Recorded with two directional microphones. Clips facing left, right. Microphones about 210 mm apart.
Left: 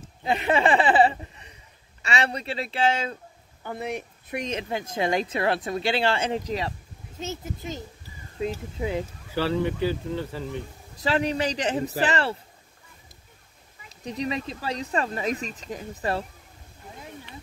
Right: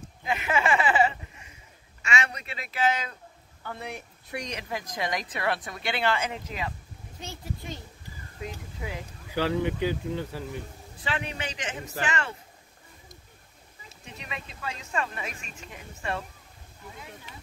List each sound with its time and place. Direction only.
0.2 s a woman's voice: 35° left (ahead or behind)
7.2 s a woman's voice: 20° left (ahead or behind)
9.3 s speech: 15° right (ahead or behind)
11.0 s speech: 35° left (ahead or behind)
14.0 s speech: 35° left (ahead or behind)